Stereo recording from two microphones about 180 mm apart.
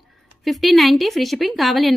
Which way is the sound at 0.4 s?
Centre (ahead or behind).